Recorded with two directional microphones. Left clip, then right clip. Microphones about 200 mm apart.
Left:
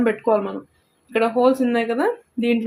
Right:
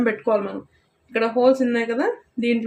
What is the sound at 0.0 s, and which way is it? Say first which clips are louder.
Speech: left 2 dB; 15° left (ahead or behind).